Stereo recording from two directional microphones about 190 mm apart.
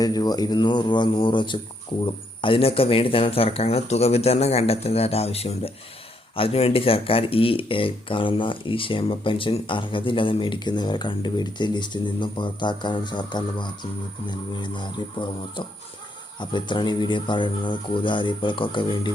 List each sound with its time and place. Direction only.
0.0 s speech: 20° left (ahead or behind)